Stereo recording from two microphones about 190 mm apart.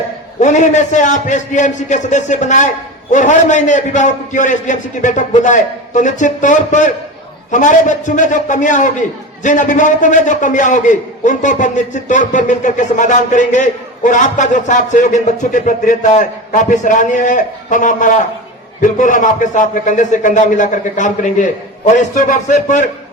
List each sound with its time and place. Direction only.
0.3 s a man's voice: 40° left (ahead or behind)